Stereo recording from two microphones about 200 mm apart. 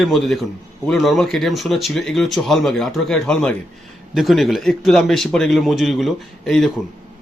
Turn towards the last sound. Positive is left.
turn(degrees=0)  # may be behind; listen again after turning